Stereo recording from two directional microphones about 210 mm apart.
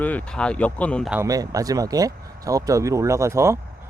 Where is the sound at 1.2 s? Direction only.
15° right (ahead or behind).